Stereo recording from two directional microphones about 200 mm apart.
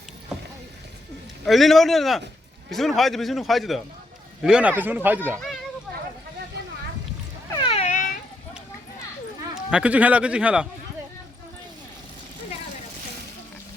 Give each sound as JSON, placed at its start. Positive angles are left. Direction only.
{"t": 1.5, "sound": "a man's voice", "side_deg": 0}
{"t": 7.6, "sound": "cat", "side_deg": 30}
{"t": 9.6, "sound": "speech", "side_deg": -5}